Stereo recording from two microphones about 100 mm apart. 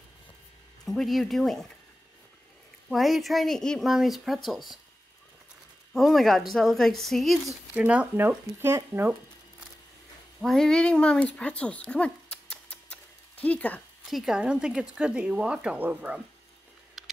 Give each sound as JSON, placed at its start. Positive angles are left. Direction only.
{"t": 0.8, "sound": "a woman's voice", "side_deg": 0}
{"t": 2.9, "sound": "a woman's voice", "side_deg": 0}
{"t": 5.9, "sound": "a woman's voice", "side_deg": 0}
{"t": 7.7, "sound": "speech", "side_deg": -15}
{"t": 10.4, "sound": "speech", "side_deg": 5}
{"t": 12.9, "sound": "a sound", "side_deg": 15}
{"t": 14.0, "sound": "speech", "side_deg": -5}
{"t": 17.0, "sound": "a sound", "side_deg": -5}